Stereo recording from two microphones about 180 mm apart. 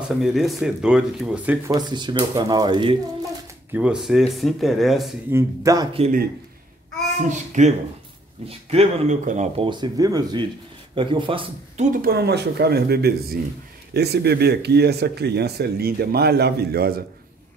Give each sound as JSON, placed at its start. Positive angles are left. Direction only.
{"t": 0.2, "sound": "speech", "side_deg": 0}
{"t": 1.7, "sound": "speech", "side_deg": -25}
{"t": 3.7, "sound": "speech", "side_deg": -5}
{"t": 5.3, "sound": "speech", "side_deg": -20}
{"t": 7.2, "sound": "speech", "side_deg": -40}
{"t": 9.7, "sound": "speech", "side_deg": -20}
{"t": 11.8, "sound": "speech", "side_deg": -50}